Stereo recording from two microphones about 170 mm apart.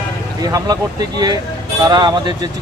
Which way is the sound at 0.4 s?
20° right (ahead or behind).